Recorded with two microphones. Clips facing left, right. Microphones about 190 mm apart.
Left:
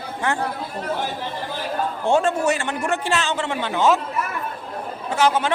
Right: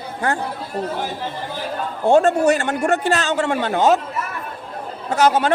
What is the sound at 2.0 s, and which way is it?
A man's voice, 40° right (ahead or behind).